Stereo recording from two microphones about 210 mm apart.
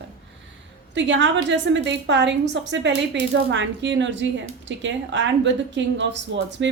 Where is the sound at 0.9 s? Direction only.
60° right (ahead or behind).